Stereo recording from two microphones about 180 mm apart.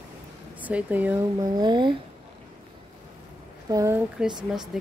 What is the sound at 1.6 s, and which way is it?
Speech, 25° right (ahead or behind).